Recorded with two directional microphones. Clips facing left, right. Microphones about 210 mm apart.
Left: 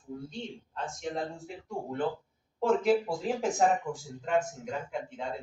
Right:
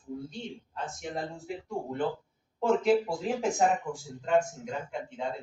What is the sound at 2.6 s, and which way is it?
Speech, centre (ahead or behind).